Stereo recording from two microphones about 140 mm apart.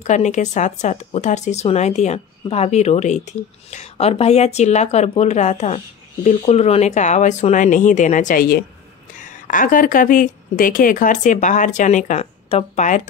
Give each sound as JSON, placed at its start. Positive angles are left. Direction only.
{"t": 0.0, "sound": "speech", "side_deg": 55}
{"t": 9.2, "sound": "speech", "side_deg": 70}